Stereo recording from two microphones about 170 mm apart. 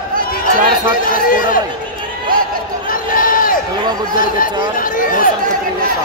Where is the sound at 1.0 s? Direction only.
55° left (ahead or behind).